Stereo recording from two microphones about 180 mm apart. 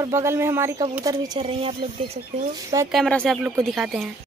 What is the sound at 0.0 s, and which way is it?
Speech, 15° right (ahead or behind).